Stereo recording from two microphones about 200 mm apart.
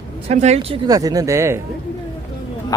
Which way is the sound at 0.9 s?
20° right (ahead or behind).